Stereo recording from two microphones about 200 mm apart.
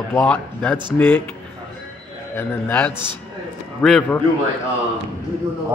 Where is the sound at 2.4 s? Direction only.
10° left (ahead or behind).